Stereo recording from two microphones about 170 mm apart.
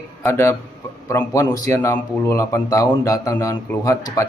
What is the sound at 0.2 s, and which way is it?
A man's voice, 15° left (ahead or behind).